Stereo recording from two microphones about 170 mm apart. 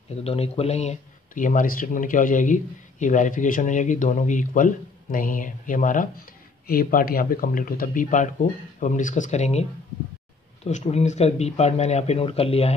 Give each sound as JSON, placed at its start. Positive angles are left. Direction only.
{"t": 0.2, "sound": "speech", "side_deg": 35}